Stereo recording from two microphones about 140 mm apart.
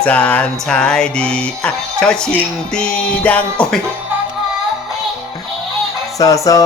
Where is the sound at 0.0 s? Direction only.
10° left (ahead or behind).